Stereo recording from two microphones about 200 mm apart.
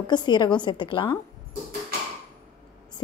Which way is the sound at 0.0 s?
20° left (ahead or behind).